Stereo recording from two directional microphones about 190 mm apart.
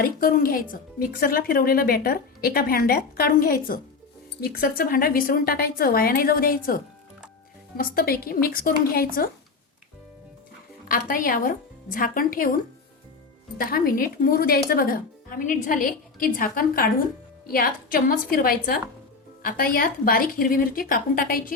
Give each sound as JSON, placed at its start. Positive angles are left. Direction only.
{"t": 0.0, "sound": "speech", "side_deg": 50}
{"t": 10.8, "sound": "speech", "side_deg": 50}
{"t": 13.6, "sound": "speech", "side_deg": 50}